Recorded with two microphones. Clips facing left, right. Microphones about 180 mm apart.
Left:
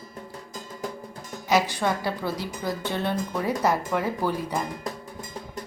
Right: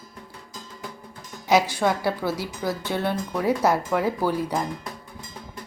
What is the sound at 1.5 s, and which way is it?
A woman's voice, 10° right (ahead or behind).